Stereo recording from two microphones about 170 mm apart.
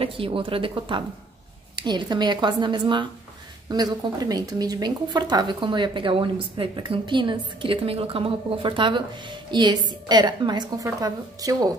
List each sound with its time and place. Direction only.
0.0 s a woman's voice: 30° right (ahead or behind)